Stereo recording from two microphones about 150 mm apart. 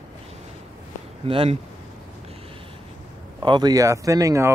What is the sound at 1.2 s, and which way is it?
Speech, 40° right (ahead or behind).